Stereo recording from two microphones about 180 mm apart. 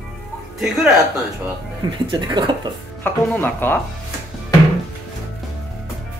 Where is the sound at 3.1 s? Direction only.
10° left (ahead or behind).